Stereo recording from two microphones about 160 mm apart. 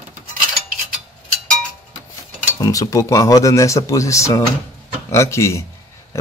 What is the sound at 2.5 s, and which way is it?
Speech, 20° left (ahead or behind).